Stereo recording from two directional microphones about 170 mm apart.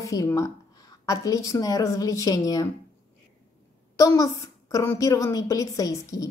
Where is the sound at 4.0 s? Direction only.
20° left (ahead or behind).